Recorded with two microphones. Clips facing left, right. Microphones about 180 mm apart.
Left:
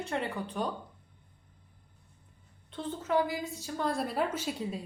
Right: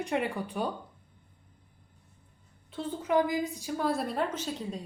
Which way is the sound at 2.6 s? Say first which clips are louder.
Right 2 dB; 5° right (ahead or behind).